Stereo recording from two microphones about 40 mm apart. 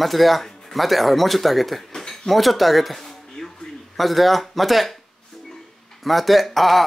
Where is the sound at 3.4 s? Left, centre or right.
Centre.